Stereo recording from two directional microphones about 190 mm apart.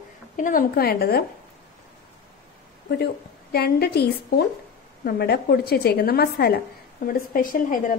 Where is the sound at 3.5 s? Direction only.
55° left (ahead or behind).